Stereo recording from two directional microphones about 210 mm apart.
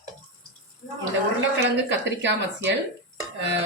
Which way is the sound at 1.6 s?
60° right (ahead or behind).